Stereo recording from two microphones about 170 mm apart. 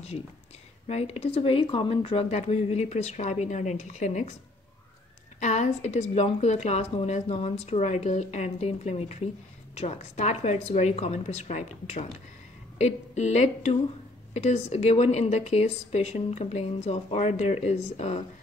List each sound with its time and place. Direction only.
0.8 s a woman's voice: 40° left (ahead or behind)
5.4 s a woman's voice: 45° left (ahead or behind)